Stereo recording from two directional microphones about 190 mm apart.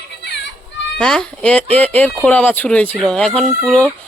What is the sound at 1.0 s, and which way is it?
Speech, 5° left (ahead or behind).